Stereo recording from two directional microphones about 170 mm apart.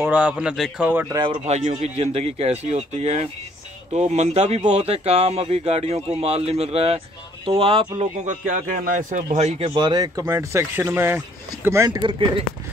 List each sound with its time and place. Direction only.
0.0 s speech: 10° right (ahead or behind); by 8.1 s 35° right (ahead or behind)
8.3 s a man's voice: 50° right (ahead or behind)
9.8 s speech: 25° right (ahead or behind)
12.0 s speech: 30° right (ahead or behind)